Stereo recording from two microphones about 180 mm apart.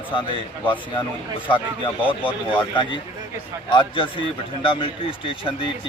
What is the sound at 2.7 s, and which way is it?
A man's voice, 25° left (ahead or behind).